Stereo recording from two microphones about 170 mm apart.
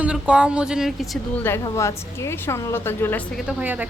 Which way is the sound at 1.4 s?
15° left (ahead or behind).